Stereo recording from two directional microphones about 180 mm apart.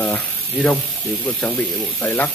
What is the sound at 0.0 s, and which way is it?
Speech, 10° left (ahead or behind).